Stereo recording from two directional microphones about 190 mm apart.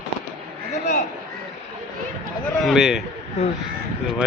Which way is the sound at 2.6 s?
Centre (ahead or behind).